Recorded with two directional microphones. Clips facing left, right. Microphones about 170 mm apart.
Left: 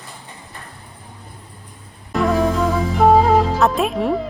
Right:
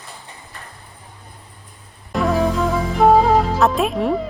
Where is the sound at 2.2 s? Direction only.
Centre (ahead or behind).